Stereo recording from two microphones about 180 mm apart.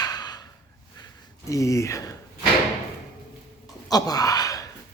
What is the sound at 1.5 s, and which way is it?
Speech, 15° left (ahead or behind).